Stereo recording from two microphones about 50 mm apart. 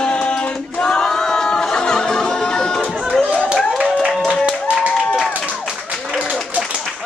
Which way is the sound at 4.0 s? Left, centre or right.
Centre.